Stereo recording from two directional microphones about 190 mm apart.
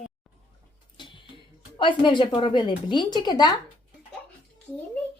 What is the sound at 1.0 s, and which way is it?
Music, 25° left (ahead or behind).